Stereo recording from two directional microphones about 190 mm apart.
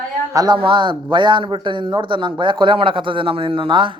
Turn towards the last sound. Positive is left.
turn(degrees=-25)  # may be behind; listen again after turning